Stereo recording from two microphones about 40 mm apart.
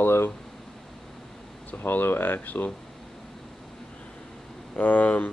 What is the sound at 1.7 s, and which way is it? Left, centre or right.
Speech, left.